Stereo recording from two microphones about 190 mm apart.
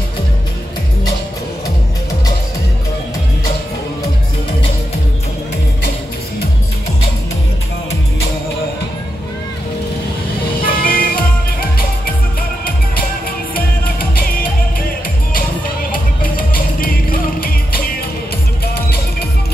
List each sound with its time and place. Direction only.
10.7 s music: 50° left (ahead or behind)
15.9 s music: 50° left (ahead or behind)